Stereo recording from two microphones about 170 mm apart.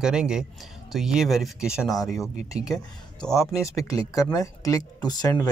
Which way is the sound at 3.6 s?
20° left (ahead or behind).